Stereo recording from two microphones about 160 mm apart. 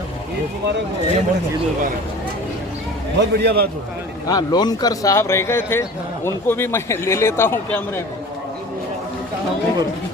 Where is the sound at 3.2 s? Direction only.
90° right.